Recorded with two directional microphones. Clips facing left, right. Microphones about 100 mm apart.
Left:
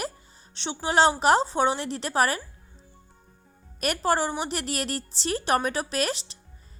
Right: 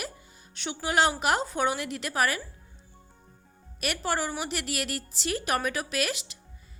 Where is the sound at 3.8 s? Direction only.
35° left (ahead or behind).